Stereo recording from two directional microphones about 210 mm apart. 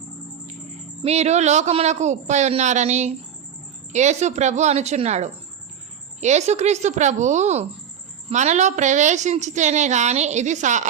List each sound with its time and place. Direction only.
1.0 s a woman's voice: 30° right (ahead or behind)